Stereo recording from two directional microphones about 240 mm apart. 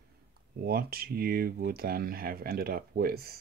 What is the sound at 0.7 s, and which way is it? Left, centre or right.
Speech, right.